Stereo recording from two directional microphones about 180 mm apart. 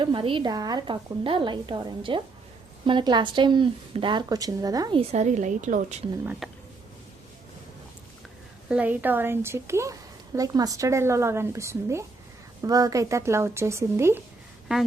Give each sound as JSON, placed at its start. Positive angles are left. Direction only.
{"t": 0.0, "sound": "a woman's voice", "side_deg": -30}
{"t": 5.1, "sound": "a woman's voice", "side_deg": -40}
{"t": 6.4, "sound": "speech", "side_deg": 0}
{"t": 8.7, "sound": "a woman's voice", "side_deg": -10}